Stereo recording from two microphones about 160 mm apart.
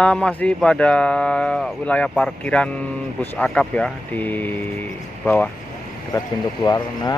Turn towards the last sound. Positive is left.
turn(degrees=25)  # may be behind; listen again after turning